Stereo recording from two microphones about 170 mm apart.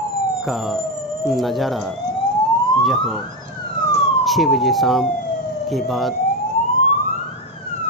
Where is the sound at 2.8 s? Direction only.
Centre (ahead or behind).